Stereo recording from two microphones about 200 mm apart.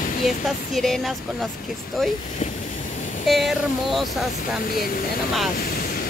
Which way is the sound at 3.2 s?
Centre (ahead or behind).